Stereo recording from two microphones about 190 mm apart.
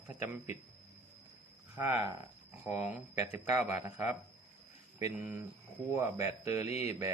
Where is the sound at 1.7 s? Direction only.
15° right (ahead or behind).